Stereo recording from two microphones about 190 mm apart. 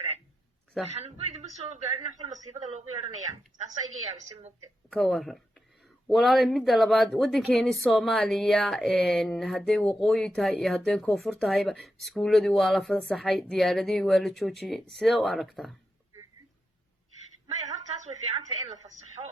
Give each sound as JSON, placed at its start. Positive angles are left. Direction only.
{"t": 0.9, "sound": "speech", "side_deg": -35}
{"t": 4.9, "sound": "speech", "side_deg": 0}
{"t": 17.7, "sound": "a sound", "side_deg": -35}
{"t": 19.2, "sound": "speech", "side_deg": -35}